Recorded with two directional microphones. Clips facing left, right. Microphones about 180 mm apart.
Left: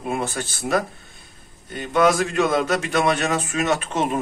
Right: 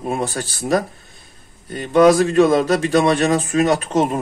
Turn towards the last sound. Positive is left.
turn(degrees=-35)  # may be behind; listen again after turning